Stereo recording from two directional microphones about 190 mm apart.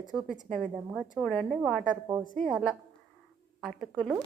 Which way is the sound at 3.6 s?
Centre (ahead or behind).